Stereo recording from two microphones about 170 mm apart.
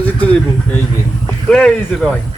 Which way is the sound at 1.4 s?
5° left (ahead or behind).